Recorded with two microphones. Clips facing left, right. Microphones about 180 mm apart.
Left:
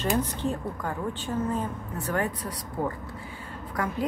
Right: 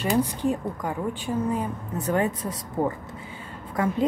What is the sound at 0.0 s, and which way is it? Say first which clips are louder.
A woman's voice: right 3 dB; 10° right (ahead or behind).